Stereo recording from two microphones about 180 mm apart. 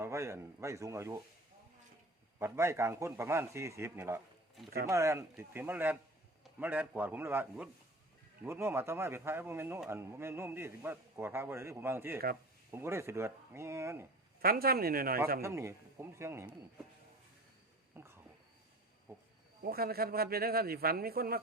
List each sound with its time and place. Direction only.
0.0 s a man's voice: 15° right (ahead or behind)
2.4 s a man's voice: 15° right (ahead or behind)
14.4 s a man's voice: 55° right (ahead or behind)
15.4 s a man's voice: 15° right (ahead or behind)
17.9 s a sound: 15° right (ahead or behind)
19.6 s a man's voice: 55° right (ahead or behind)